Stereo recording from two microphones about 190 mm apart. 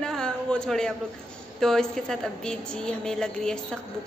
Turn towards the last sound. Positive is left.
turn(degrees=5)  # may be behind; listen again after turning